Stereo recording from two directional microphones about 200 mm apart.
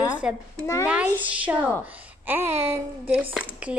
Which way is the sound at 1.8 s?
10° right (ahead or behind).